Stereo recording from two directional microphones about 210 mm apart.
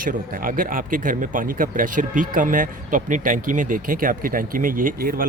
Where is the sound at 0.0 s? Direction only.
40° right (ahead or behind).